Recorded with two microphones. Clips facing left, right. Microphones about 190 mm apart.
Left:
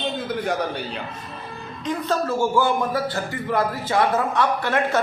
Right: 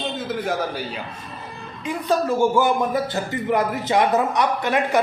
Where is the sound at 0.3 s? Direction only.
Centre (ahead or behind).